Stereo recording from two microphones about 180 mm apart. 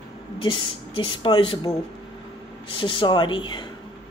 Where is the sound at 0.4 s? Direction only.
30° left (ahead or behind).